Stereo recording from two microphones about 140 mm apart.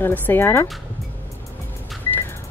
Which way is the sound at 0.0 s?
15° left (ahead or behind).